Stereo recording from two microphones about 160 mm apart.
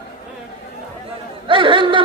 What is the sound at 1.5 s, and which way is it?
Chatter, 30° right (ahead or behind).